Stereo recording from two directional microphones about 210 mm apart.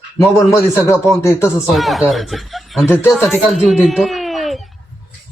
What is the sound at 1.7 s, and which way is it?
A man's voice, centre (ahead or behind).